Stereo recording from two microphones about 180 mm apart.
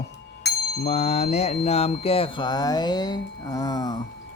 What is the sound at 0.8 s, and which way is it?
Mantra, 40° left (ahead or behind).